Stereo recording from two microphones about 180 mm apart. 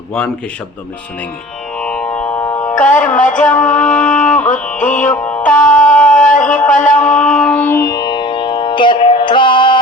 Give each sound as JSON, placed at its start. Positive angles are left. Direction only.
{"t": 1.8, "sound": "music", "side_deg": 5}
{"t": 2.7, "sound": "speech", "side_deg": 45}
{"t": 3.2, "sound": "a sound", "side_deg": 45}
{"t": 3.5, "sound": "music", "side_deg": 5}
{"t": 4.8, "sound": "a sound", "side_deg": 45}
{"t": 5.0, "sound": "music", "side_deg": 10}
{"t": 5.4, "sound": "music", "side_deg": 45}
{"t": 5.6, "sound": "music", "side_deg": 10}
{"t": 6.1, "sound": "a sound", "side_deg": 45}
{"t": 6.7, "sound": "music", "side_deg": 45}
{"t": 7.2, "sound": "music", "side_deg": 5}